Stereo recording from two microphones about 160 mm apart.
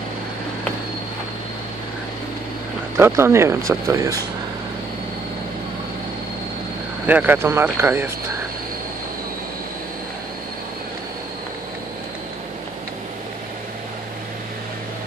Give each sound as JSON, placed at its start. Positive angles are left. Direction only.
{"t": 3.0, "sound": "speech", "side_deg": -15}
{"t": 7.1, "sound": "speech", "side_deg": -10}